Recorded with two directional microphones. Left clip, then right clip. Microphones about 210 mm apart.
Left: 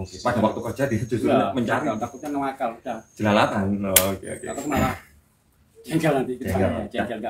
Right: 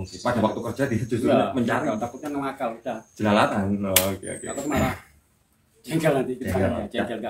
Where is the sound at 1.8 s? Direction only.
Centre (ahead or behind).